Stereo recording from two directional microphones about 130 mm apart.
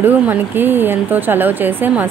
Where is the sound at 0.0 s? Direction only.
15° right (ahead or behind).